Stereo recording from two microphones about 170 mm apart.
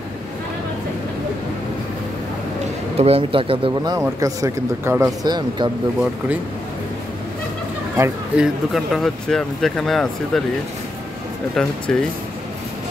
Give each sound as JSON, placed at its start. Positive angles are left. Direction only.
{"t": 3.0, "sound": "speech", "side_deg": -35}
{"t": 4.0, "sound": "speech", "side_deg": -15}
{"t": 8.0, "sound": "speech", "side_deg": -5}
{"t": 11.9, "sound": "speech", "side_deg": 5}